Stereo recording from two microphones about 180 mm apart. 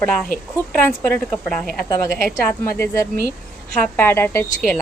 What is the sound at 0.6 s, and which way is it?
A woman's voice, 10° left (ahead or behind).